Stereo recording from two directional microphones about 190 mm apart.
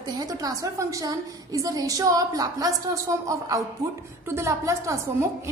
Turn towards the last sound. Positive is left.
turn(degrees=-15)  # may be behind; listen again after turning